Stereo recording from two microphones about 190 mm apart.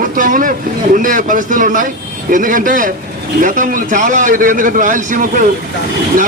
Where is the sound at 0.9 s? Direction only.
45° right (ahead or behind).